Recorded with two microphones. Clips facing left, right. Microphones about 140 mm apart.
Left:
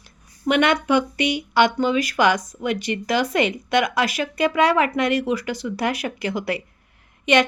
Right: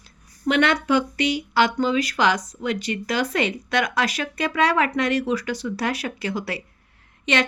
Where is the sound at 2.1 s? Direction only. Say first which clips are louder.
Left 2 dB; 10° left (ahead or behind).